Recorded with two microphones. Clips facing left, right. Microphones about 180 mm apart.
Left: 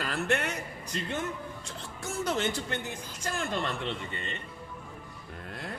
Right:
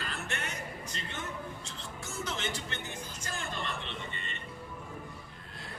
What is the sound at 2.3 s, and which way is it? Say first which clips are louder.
Speech: left 9 dB; 55° left (ahead or behind).